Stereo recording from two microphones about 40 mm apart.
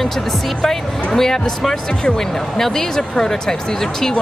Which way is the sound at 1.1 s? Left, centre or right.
Centre.